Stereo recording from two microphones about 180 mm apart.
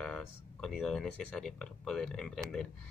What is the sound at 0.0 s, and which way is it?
Speech, 5° left (ahead or behind).